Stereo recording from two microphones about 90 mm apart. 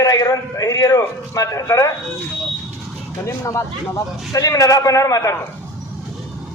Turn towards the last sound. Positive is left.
turn(degrees=35)  # may be behind; listen again after turning